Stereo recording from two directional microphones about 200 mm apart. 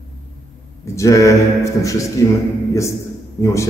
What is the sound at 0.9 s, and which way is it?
A man's voice, 15° left (ahead or behind).